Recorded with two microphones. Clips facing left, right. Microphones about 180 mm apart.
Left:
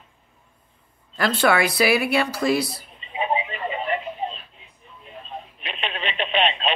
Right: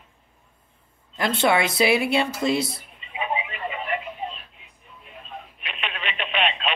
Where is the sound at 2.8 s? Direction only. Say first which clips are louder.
Left 4 dB; 30° left (ahead or behind).